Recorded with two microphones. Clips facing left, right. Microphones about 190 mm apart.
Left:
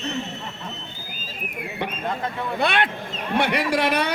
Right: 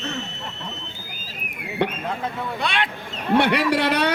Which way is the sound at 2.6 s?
55° left (ahead or behind).